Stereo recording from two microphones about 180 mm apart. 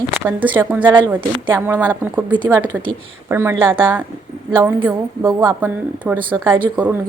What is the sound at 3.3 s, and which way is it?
Speech, 15° right (ahead or behind).